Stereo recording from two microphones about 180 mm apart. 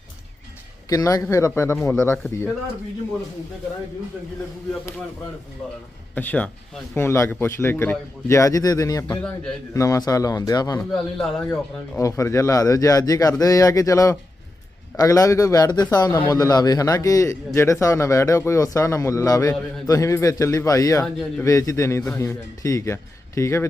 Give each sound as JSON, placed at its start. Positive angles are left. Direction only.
{"t": 0.9, "sound": "a man's voice", "side_deg": 20}
{"t": 6.1, "sound": "a man's voice", "side_deg": 10}
{"t": 10.9, "sound": "a man's voice", "side_deg": 5}
{"t": 11.9, "sound": "a man's voice", "side_deg": 15}
{"t": 21.0, "sound": "a man's voice", "side_deg": 5}
{"t": 21.4, "sound": "a man's voice", "side_deg": 20}